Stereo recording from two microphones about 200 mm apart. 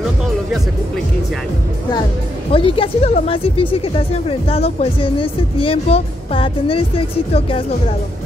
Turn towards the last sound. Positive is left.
turn(degrees=25)  # may be behind; listen again after turning